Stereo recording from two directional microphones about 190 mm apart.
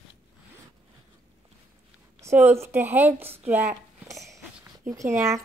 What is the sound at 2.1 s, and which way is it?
Speech, 10° right (ahead or behind).